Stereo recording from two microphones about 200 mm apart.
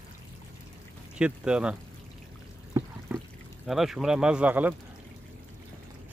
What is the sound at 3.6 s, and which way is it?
Speech, centre (ahead or behind).